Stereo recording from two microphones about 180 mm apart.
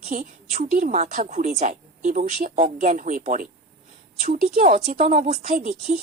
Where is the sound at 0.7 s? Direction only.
40° right (ahead or behind).